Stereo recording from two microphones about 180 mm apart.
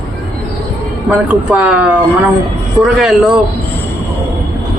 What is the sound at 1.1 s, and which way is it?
Speech, 5° right (ahead or behind).